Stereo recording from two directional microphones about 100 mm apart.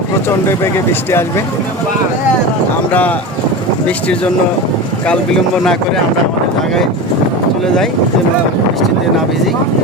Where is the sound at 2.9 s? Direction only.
15° left (ahead or behind).